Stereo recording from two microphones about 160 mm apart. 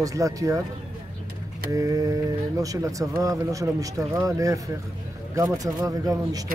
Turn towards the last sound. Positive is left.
turn(degrees=-25)  # may be behind; listen again after turning